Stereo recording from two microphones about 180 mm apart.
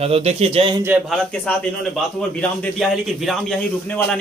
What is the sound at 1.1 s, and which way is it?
Speech, 5° left (ahead or behind).